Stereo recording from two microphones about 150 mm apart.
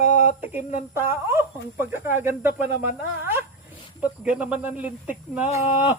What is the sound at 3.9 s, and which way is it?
Speech, 10° right (ahead or behind).